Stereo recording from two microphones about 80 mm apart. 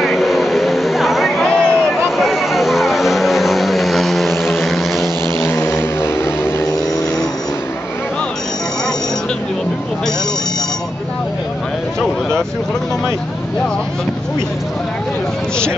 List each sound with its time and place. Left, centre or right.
0.0 s vehicle: centre
1.4 s a sound: centre
2.0 s vehicle: centre
5.2 s vehicle: left